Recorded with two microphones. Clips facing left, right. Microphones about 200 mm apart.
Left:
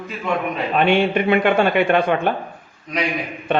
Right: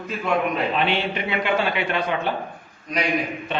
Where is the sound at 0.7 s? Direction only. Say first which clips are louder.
Left 7 dB; 50° left (ahead or behind).